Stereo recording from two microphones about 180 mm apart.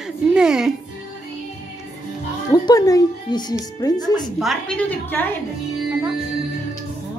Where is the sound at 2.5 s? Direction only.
20° left (ahead or behind).